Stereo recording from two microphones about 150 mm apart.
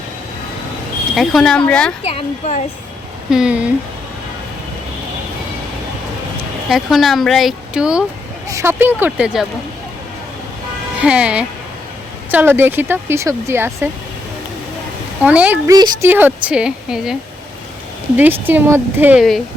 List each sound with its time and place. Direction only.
1.1 s speech: centre (ahead or behind)
2.0 s speech: 40° left (ahead or behind)
3.2 s a woman's voice: 5° right (ahead or behind)
6.7 s speech: centre (ahead or behind)
8.4 s a woman's voice: 20° right (ahead or behind)
11.0 s a woman's voice: 10° right (ahead or behind)
15.2 s a woman's voice: 10° right (ahead or behind)
15.6 s speech: 25° right (ahead or behind)
16.0 s a woman's voice: 10° right (ahead or behind)
18.2 s a woman's voice: 10° right (ahead or behind)